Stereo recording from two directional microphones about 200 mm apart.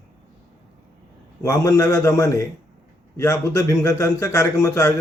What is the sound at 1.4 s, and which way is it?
A man's voice, 15° left (ahead or behind).